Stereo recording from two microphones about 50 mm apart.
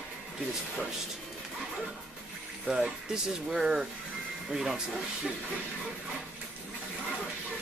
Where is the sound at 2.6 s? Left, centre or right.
Centre.